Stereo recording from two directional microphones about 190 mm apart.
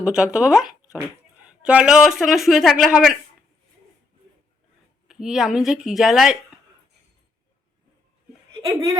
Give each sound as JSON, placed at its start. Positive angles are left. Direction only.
{"t": 0.0, "sound": "speech", "side_deg": -5}
{"t": 5.0, "sound": "speech", "side_deg": 0}
{"t": 8.6, "sound": "speech", "side_deg": -15}